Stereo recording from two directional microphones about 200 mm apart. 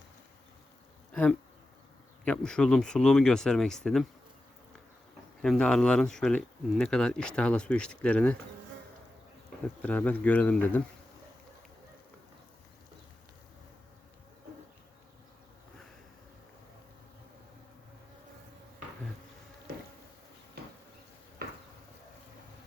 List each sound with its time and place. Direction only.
1.1 s speech: 5° left (ahead or behind)
5.4 s speech: 5° left (ahead or behind)
9.8 s speech: 5° left (ahead or behind)
20.6 s bee: 50° right (ahead or behind)
21.4 s a sound: 50° right (ahead or behind)